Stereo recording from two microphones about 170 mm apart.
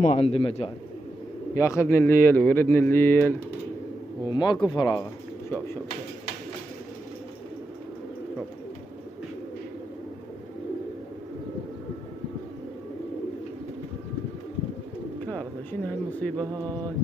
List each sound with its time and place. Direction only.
0.0 s a man's voice: 40° left (ahead or behind)
1.5 s speech: 20° left (ahead or behind)
4.3 s speech: 25° left (ahead or behind)
15.2 s speech: 10° left (ahead or behind)